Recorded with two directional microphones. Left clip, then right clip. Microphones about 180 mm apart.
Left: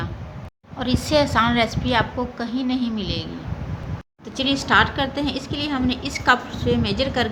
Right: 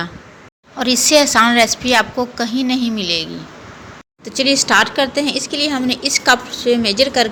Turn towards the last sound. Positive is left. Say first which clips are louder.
# right 8 dB
turn(degrees=-15)  # may be behind; listen again after turning